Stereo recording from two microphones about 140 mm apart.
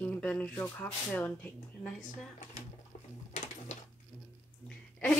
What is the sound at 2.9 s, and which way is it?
Sewing machine, 55° left (ahead or behind).